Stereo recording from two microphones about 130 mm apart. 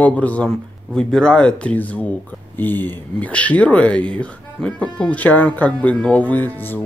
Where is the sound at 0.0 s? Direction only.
10° left (ahead or behind).